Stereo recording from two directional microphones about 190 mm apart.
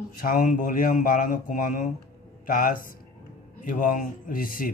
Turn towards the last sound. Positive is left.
turn(degrees=45)  # may be behind; listen again after turning